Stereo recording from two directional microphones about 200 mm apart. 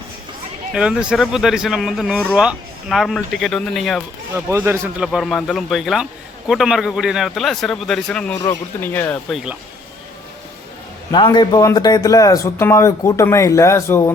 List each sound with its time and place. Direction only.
0.7 s speech: 5° right (ahead or behind)
4.4 s a man's voice: 10° right (ahead or behind)
5.0 s speech: centre (ahead or behind)
9.3 s speech: 5° right (ahead or behind)
11.1 s speech: 20° left (ahead or behind)